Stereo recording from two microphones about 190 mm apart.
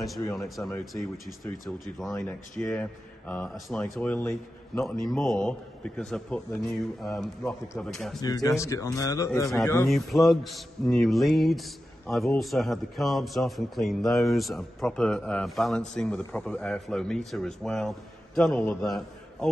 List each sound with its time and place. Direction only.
0.4 s speech: centre (ahead or behind)
2.0 s speech: centre (ahead or behind)
8.2 s a man's voice: 20° left (ahead or behind)
9.8 s a man's voice: centre (ahead or behind)